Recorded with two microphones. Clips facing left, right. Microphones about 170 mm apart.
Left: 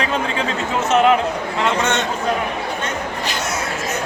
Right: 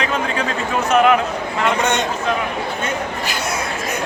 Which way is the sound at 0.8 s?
25° left (ahead or behind).